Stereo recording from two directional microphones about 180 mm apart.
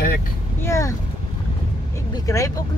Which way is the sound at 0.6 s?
15° left (ahead or behind).